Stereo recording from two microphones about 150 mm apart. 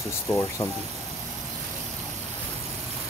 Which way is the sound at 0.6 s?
25° left (ahead or behind).